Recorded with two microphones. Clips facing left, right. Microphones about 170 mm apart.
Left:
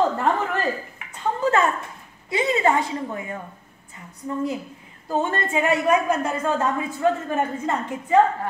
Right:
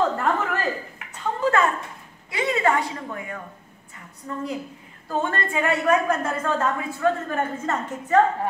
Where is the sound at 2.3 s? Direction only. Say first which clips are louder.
Left 2 dB; 25° left (ahead or behind).